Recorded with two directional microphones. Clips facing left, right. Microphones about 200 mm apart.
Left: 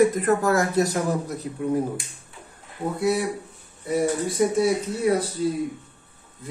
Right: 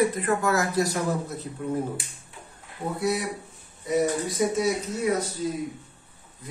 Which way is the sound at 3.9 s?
30° left (ahead or behind).